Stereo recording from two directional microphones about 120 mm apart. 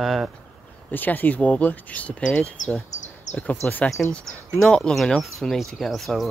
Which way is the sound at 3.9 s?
5° left (ahead or behind).